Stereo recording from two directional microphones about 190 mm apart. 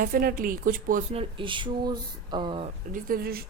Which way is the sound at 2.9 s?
50° right (ahead or behind).